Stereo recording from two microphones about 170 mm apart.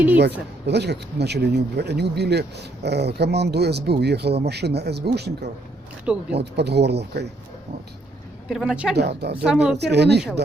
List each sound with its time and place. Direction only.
0.2 s speech: 80° right
8.4 s a woman's voice: 5° right (ahead or behind)
9.0 s speech: 75° right (ahead or behind)
9.4 s a woman's voice: 5° right (ahead or behind)
9.7 s speech: 80° right